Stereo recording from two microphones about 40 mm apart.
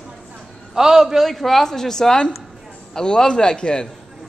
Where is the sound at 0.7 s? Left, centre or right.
Centre.